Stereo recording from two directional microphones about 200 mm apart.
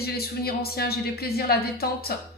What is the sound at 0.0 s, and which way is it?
A woman's voice, 50° left (ahead or behind).